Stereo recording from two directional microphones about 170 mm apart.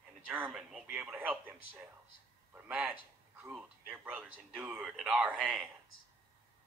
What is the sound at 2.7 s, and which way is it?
Speech, 5° right (ahead or behind).